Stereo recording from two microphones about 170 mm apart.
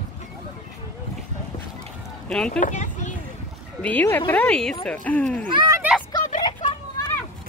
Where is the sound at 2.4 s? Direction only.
50° left (ahead or behind).